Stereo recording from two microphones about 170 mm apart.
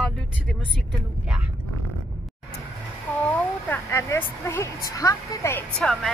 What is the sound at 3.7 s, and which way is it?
A woman's voice, 10° left (ahead or behind).